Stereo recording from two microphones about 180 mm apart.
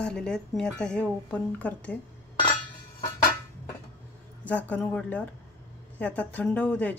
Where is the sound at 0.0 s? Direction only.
5° left (ahead or behind).